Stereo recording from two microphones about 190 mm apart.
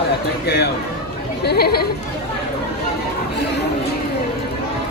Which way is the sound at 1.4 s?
55° left (ahead or behind).